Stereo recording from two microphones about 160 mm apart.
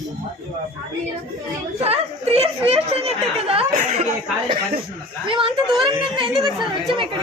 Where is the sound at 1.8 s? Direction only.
40° right (ahead or behind).